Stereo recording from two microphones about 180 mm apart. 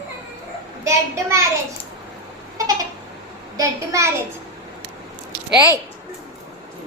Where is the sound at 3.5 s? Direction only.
15° right (ahead or behind).